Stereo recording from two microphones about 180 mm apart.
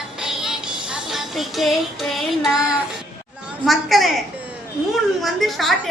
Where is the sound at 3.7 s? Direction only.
Centre (ahead or behind).